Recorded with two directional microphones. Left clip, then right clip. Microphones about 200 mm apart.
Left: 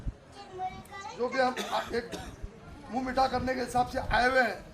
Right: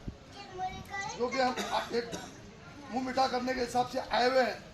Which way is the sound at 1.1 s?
10° right (ahead or behind).